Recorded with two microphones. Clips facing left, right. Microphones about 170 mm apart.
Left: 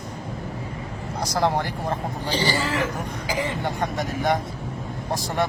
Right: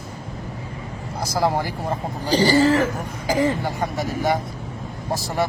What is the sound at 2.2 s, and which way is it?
A man's voice, 40° right (ahead or behind).